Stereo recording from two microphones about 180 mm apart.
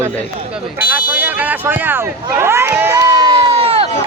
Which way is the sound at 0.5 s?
10° right (ahead or behind).